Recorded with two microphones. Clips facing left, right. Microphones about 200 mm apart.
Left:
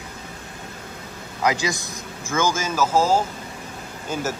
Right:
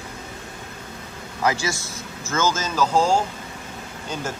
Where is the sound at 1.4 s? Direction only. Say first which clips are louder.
Left 1 dB; 15° left (ahead or behind).